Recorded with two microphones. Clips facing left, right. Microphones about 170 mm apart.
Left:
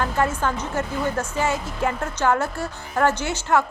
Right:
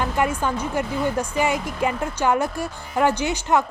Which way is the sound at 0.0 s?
15° right (ahead or behind).